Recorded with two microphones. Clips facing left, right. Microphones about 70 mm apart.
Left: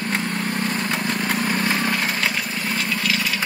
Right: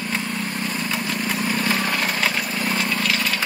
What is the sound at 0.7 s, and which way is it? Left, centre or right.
Vehicle, left.